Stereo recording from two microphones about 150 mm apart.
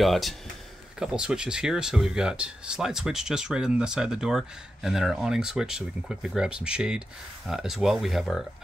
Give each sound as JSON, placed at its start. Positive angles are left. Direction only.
{"t": 0.0, "sound": "speech", "side_deg": 0}